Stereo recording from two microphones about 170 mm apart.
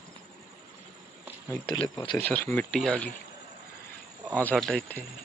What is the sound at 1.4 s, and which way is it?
Speech, 25° left (ahead or behind).